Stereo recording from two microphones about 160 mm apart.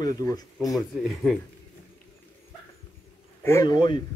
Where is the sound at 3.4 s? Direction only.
20° left (ahead or behind).